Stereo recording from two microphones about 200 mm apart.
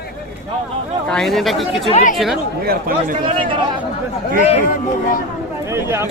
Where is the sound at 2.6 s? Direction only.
45° right (ahead or behind).